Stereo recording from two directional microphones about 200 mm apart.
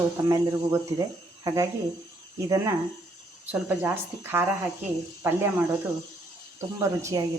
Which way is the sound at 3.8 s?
10° right (ahead or behind).